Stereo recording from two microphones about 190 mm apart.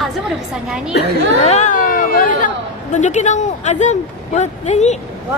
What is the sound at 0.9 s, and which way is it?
Speech, 60° left (ahead or behind).